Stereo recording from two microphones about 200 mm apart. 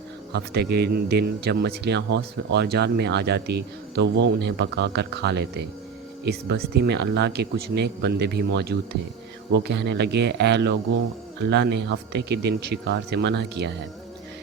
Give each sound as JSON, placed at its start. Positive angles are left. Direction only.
{"t": 0.3, "sound": "speech", "side_deg": -55}